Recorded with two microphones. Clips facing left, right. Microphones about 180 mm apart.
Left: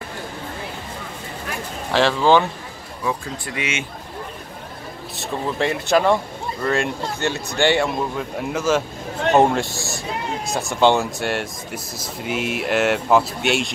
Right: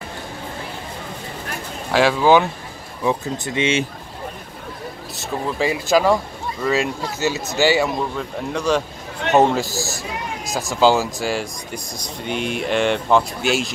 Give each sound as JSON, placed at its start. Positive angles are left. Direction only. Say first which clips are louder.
{"t": 1.9, "sound": "speech", "louder": "right 1 dB", "side_deg": -10}
{"t": 3.0, "sound": "speech", "louder": "right 4 dB", "side_deg": -20}
{"t": 5.1, "sound": "a man's voice", "louder": "even", "side_deg": 0}